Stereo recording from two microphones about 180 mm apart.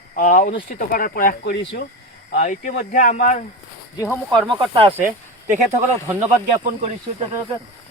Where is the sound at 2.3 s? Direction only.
45° left (ahead or behind).